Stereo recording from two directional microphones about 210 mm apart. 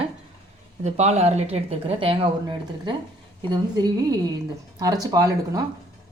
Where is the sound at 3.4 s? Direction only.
20° right (ahead or behind).